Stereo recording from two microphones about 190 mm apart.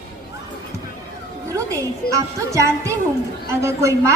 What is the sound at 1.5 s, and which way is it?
A woman's voice, 15° right (ahead or behind).